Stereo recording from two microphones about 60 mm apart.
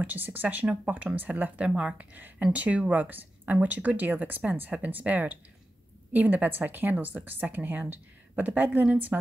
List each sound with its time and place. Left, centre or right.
0.0 s speech: right